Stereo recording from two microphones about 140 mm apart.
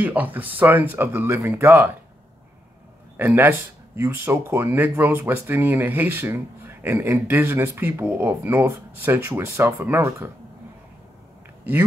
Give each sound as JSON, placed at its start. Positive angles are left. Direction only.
{"t": 0.0, "sound": "speech", "side_deg": -10}
{"t": 3.2, "sound": "speech", "side_deg": -15}